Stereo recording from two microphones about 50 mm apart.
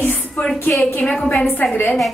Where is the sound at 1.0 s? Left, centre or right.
Centre.